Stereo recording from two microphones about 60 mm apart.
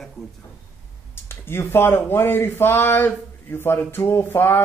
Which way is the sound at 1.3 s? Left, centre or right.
Left.